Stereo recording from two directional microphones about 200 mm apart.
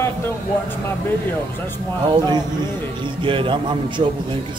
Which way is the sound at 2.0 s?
20° right (ahead or behind).